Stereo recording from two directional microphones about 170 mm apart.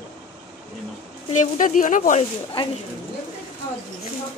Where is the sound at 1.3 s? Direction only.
50° left (ahead or behind).